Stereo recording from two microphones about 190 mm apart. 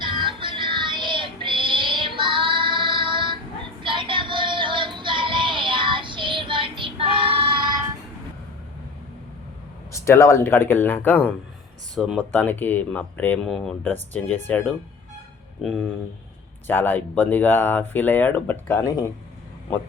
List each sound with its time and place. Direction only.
0.0 s music: 25° right (ahead or behind)
3.8 s synthetic singing: 25° right (ahead or behind)
9.9 s speech: 15° left (ahead or behind)
15.6 s speech: centre (ahead or behind)